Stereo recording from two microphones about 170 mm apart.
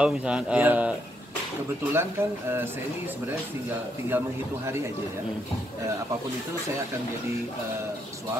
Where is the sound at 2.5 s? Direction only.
10° right (ahead or behind).